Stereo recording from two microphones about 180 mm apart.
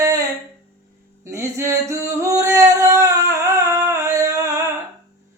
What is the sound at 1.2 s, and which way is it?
Singing, 15° right (ahead or behind).